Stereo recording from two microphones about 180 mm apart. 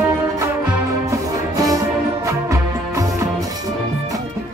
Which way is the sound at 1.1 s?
20° right (ahead or behind).